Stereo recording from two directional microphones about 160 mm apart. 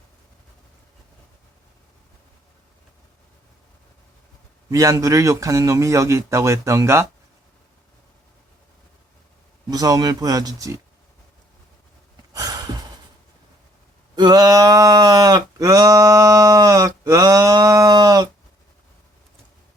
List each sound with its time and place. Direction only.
4.7 s a man's voice: 20° right (ahead or behind)
9.6 s a man's voice: 25° right (ahead or behind)
12.3 s sigh: 25° right (ahead or behind)
14.2 s a sound: 25° right (ahead or behind)